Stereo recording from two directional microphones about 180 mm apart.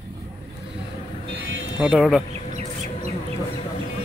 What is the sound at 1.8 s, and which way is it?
Speech, 5° right (ahead or behind).